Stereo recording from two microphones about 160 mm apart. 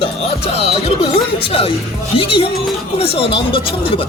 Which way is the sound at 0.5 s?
40° left (ahead or behind).